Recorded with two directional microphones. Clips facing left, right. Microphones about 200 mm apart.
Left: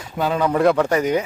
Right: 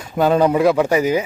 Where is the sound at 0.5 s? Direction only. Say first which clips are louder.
Right 2 dB; 5° right (ahead or behind).